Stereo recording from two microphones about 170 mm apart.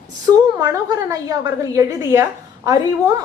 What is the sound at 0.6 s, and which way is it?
A woman's voice, 20° right (ahead or behind).